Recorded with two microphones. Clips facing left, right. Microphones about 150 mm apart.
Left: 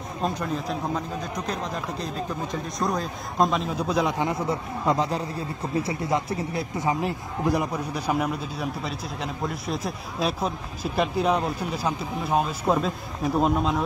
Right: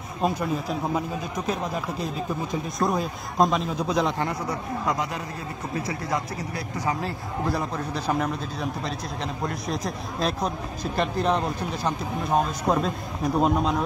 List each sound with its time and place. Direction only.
0.2 s a man's voice: 10° right (ahead or behind)
4.1 s a man's voice: 20° left (ahead or behind); by 13.8 s centre (ahead or behind)